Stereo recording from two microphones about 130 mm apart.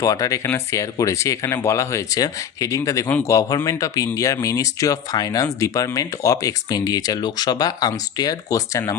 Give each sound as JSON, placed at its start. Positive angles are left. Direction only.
{"t": 0.0, "sound": "speech", "side_deg": 25}